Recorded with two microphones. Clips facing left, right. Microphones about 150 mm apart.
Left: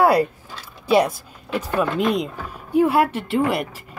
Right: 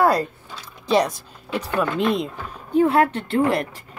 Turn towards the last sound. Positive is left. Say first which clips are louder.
# right 1 dB
turn(degrees=5)  # may be behind; listen again after turning